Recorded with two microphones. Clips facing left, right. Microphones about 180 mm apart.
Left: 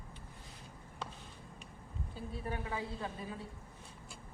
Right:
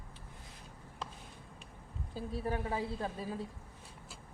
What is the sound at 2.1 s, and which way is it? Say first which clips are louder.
Speech: right 5 dB; 40° right (ahead or behind).